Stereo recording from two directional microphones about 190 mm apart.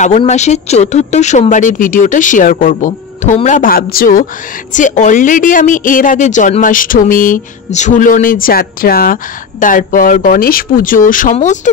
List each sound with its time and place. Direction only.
0.2 s speech: 35° left (ahead or behind)